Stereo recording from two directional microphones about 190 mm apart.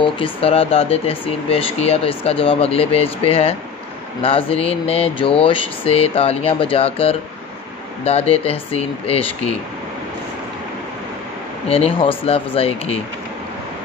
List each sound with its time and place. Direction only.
0.0 s speech: 30° left (ahead or behind)
11.7 s speech: 30° left (ahead or behind)